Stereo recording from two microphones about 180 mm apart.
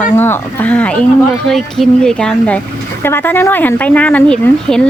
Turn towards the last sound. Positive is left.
turn(degrees=5)  # may be behind; listen again after turning